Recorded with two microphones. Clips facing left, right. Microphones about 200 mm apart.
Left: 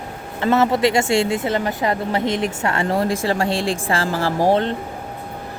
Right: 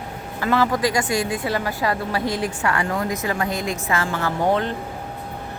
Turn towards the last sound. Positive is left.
turn(degrees=30)  # may be behind; listen again after turning